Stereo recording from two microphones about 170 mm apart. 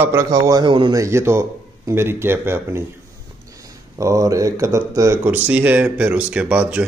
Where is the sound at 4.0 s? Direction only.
20° right (ahead or behind).